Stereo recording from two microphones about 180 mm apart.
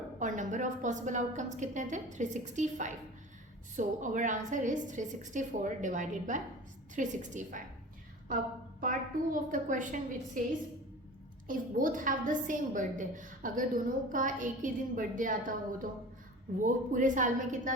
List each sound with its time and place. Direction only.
0.2 s a woman's voice: 45° right (ahead or behind)
8.8 s a woman's voice: 50° right (ahead or behind)
11.4 s a woman's voice: 50° right (ahead or behind)